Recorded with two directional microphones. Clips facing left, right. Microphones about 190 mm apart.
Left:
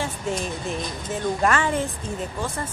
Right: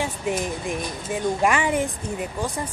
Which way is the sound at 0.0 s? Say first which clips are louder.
Right 2 dB; 15° right (ahead or behind).